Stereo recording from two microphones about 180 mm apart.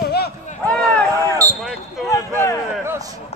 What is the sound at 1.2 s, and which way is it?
Basketball bounce, 20° right (ahead or behind).